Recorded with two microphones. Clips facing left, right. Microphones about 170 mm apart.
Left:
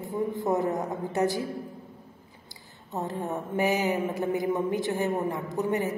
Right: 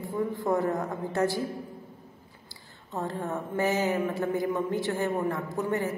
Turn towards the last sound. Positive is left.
turn(degrees=20)  # may be behind; listen again after turning